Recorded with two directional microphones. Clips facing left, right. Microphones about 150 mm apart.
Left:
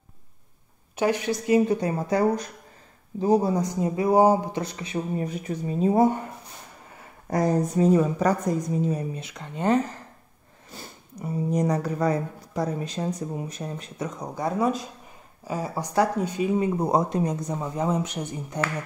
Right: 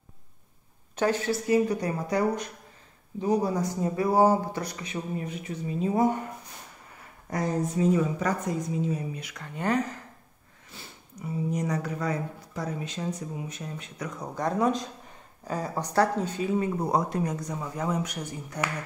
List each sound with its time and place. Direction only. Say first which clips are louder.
0.9 s speech: left 2 dB; 10° left (ahead or behind); by 6.0 s 35° left (ahead or behind)
7.2 s speech: left 5 dB; 40° left (ahead or behind)
9.2 s speech: left 4 dB; 20° left (ahead or behind)
10.7 s speech: left 5 dB; 40° left (ahead or behind)
13.9 s speech: left 1 dB; 20° left (ahead or behind)